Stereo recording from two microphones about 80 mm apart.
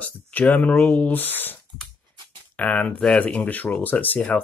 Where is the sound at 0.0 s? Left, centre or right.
Centre.